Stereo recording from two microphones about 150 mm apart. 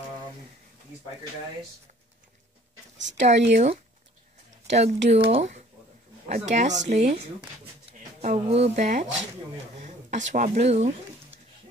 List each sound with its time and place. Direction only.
3.0 s a woman's voice: 50° right (ahead or behind)
8.2 s a woman's voice: 45° right (ahead or behind)